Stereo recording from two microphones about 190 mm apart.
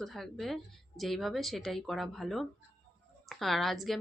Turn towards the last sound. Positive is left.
turn(degrees=0)  # may be behind; listen again after turning